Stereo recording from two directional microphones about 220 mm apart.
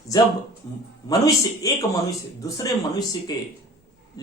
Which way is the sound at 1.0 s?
15° left (ahead or behind).